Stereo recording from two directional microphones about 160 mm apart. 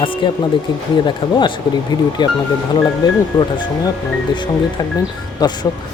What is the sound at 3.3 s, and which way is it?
Speech, 25° left (ahead or behind).